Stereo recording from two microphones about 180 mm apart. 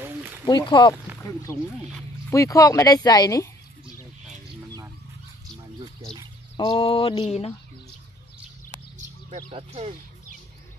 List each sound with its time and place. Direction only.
0.5 s speech: 25° left (ahead or behind)
6.5 s speech: 30° left (ahead or behind)
9.3 s speech: 35° right (ahead or behind)